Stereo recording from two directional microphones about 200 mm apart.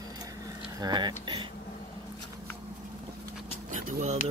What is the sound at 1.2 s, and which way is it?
Speech, 25° right (ahead or behind).